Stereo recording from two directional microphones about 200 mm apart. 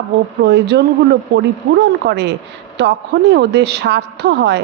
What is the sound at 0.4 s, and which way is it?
Speech, 55° right (ahead or behind).